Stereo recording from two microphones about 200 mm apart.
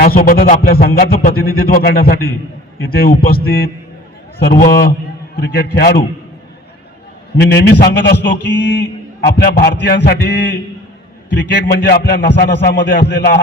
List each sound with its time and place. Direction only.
0.0 s a man's voice: 45° left (ahead or behind)
7.3 s a man's voice: 55° left (ahead or behind)